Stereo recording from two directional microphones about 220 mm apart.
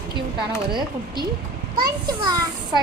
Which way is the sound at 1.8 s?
20° right (ahead or behind).